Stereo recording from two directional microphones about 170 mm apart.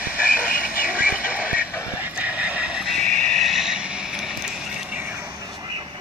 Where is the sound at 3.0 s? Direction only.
5° left (ahead or behind).